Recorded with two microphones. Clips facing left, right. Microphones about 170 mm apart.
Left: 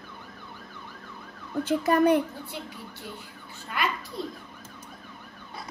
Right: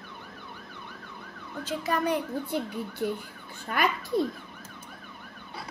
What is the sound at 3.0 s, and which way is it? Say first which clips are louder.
Speech: right 13 dB; 55° right (ahead or behind).